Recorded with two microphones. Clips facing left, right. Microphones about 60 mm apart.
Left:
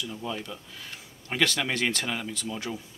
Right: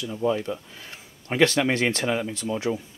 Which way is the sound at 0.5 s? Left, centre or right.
Right.